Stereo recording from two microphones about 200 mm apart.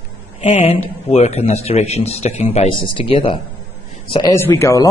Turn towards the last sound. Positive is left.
turn(degrees=15)  # may be behind; listen again after turning